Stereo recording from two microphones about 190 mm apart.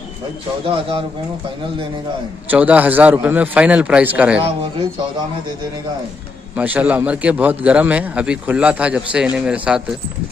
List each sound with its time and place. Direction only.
0.7 s speech: 30° right (ahead or behind)
2.5 s a man's voice: 10° right (ahead or behind)
6.5 s a man's voice: 10° right (ahead or behind)